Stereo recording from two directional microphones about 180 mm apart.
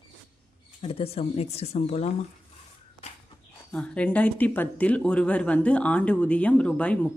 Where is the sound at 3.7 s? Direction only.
5° left (ahead or behind).